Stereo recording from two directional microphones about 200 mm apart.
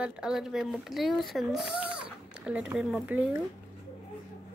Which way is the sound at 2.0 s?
5° right (ahead or behind).